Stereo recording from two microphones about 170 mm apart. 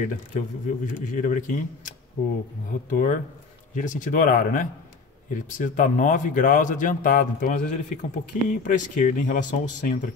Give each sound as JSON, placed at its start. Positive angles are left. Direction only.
{"t": 0.0, "sound": "speech", "side_deg": 50}